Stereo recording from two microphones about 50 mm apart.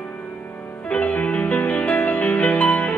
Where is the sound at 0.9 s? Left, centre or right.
Left.